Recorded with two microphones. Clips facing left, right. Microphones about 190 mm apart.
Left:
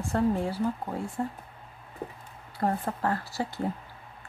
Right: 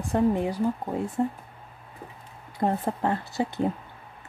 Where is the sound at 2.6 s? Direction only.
20° right (ahead or behind).